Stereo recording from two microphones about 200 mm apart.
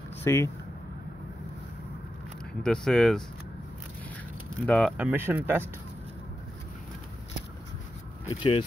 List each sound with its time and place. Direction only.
0.2 s speech: 10° left (ahead or behind)
2.6 s speech: 5° left (ahead or behind)
4.6 s speech: 5° left (ahead or behind)
4.9 s speech: 10° right (ahead or behind)
8.4 s speech: 30° left (ahead or behind)